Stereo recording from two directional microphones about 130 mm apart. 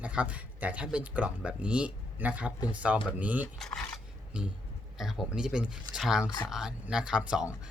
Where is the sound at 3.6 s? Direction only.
5° left (ahead or behind).